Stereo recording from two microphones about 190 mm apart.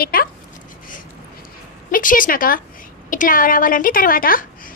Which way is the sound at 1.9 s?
45° left (ahead or behind).